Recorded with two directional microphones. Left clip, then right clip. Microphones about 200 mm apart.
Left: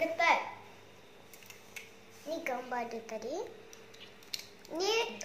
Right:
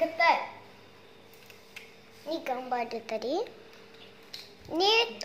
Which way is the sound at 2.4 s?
35° right (ahead or behind).